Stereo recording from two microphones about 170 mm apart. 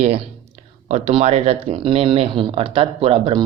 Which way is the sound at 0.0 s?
40° right (ahead or behind).